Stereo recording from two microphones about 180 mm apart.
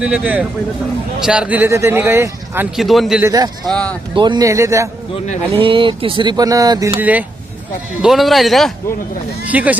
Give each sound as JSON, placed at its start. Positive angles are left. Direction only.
{"t": 0.0, "sound": "a man's voice", "side_deg": -5}
{"t": 2.7, "sound": "a man's voice", "side_deg": 0}
{"t": 3.2, "sound": "a sound", "side_deg": -20}
{"t": 3.7, "sound": "a man's voice", "side_deg": 5}
{"t": 4.1, "sound": "speech", "side_deg": -25}
{"t": 5.5, "sound": "a sound", "side_deg": -30}
{"t": 7.0, "sound": "a man's voice", "side_deg": -10}